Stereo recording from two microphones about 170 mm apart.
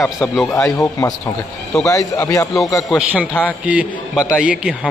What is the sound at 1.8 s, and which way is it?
Speech, 20° left (ahead or behind).